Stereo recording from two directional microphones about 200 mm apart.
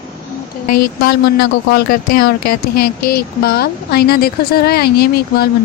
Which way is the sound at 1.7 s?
45° left (ahead or behind).